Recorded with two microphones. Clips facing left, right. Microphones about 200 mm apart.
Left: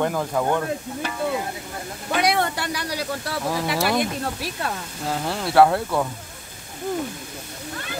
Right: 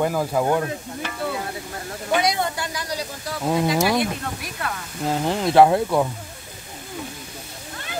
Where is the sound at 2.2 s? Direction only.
65° left (ahead or behind).